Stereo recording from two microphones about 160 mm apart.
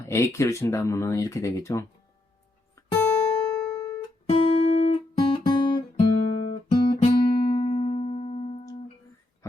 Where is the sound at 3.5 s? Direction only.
5° left (ahead or behind).